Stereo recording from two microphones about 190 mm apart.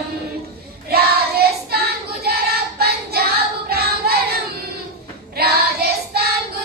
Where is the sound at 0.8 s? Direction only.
55° right (ahead or behind).